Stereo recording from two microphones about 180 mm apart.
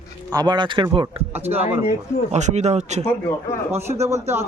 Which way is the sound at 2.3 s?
40° right (ahead or behind).